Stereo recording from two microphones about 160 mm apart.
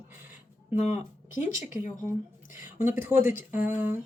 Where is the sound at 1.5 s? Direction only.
20° right (ahead or behind).